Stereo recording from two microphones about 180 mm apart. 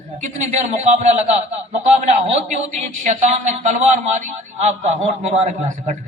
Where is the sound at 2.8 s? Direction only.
40° right (ahead or behind).